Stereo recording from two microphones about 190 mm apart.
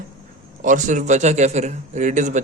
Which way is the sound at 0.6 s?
40° right (ahead or behind).